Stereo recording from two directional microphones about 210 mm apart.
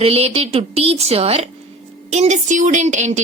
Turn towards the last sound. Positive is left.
turn(degrees=-35)  # may be behind; listen again after turning